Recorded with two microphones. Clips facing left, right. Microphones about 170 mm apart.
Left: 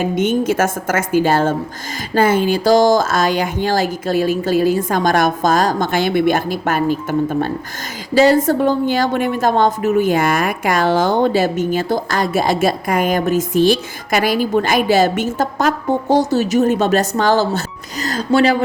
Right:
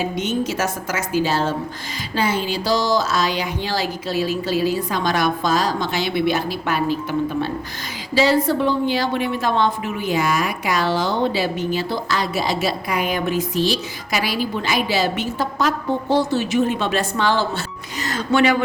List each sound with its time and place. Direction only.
0.0 s a woman's voice: 50° left (ahead or behind); by 18.5 s 35° left (ahead or behind)